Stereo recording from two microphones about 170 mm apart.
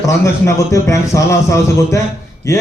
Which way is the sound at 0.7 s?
20° left (ahead or behind).